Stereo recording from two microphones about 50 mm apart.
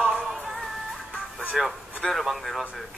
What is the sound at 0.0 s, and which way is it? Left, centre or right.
Music, centre.